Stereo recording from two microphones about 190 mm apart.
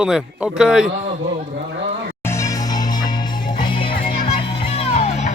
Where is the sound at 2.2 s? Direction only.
15° left (ahead or behind).